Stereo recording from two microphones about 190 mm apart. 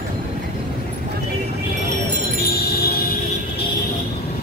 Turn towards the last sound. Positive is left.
turn(degrees=55)  # may be behind; listen again after turning